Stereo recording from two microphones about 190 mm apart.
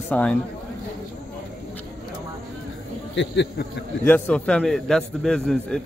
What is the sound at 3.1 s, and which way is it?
Speech, 65° left (ahead or behind).